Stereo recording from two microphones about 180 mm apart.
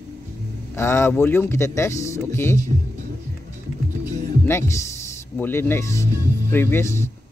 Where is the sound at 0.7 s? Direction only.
15° left (ahead or behind).